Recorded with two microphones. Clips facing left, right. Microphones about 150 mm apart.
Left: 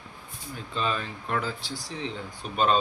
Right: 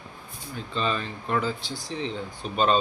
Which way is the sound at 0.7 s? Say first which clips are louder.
Right 2 dB; 5° left (ahead or behind).